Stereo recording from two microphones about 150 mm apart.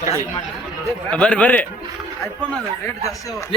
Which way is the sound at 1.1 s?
5° left (ahead or behind).